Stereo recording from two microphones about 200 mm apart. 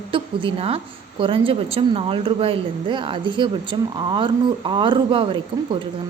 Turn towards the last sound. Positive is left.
turn(degrees=-25)  # may be behind; listen again after turning